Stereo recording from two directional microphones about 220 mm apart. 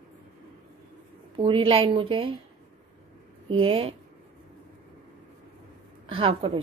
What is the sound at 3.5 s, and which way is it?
Speech, 25° right (ahead or behind).